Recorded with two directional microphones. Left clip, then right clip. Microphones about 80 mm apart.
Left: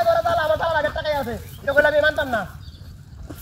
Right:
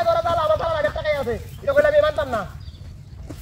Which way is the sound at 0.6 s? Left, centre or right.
Centre.